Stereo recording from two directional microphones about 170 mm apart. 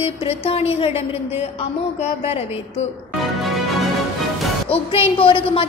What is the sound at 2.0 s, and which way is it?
Speech, 35° left (ahead or behind).